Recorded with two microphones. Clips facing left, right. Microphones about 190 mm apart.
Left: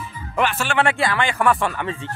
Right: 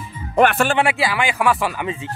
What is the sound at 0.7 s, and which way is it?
Speech, 5° right (ahead or behind).